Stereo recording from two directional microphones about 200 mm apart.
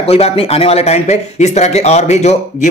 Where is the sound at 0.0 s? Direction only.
30° left (ahead or behind).